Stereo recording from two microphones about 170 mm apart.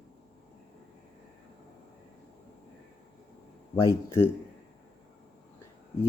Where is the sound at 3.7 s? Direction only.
15° left (ahead or behind).